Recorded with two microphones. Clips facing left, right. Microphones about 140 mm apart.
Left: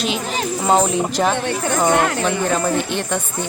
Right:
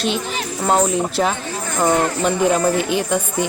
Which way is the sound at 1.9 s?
80° left.